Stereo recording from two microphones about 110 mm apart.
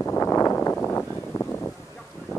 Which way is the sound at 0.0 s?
25° left (ahead or behind).